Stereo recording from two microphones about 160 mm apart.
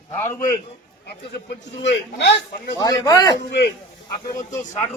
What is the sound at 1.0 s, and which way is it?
Speech, 90° left.